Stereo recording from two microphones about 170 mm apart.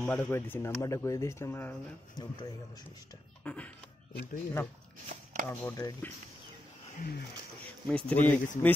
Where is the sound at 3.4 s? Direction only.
10° left (ahead or behind).